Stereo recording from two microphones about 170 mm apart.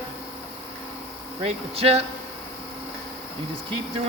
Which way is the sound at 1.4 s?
35° right (ahead or behind).